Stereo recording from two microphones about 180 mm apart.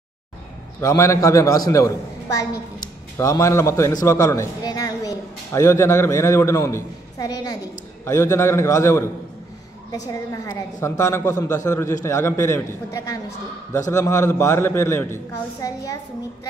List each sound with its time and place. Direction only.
0.7 s a man's voice: 15° left (ahead or behind)